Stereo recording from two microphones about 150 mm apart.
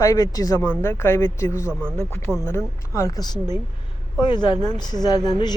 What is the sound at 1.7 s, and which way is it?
Speech, 15° right (ahead or behind).